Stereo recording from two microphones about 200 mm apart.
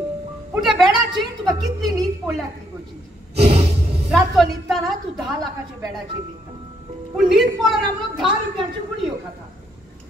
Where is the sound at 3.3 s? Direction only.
30° right (ahead or behind).